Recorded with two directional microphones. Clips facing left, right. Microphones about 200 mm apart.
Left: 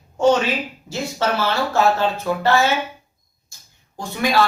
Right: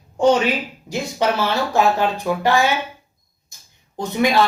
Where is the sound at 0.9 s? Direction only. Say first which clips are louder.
Right 2 dB; 15° right (ahead or behind).